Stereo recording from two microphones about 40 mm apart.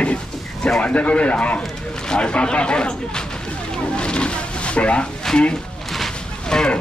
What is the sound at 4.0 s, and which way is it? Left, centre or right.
Roaring cats, left.